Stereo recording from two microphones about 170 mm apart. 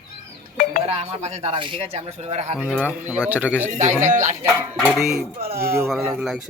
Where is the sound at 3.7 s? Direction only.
45° right (ahead or behind).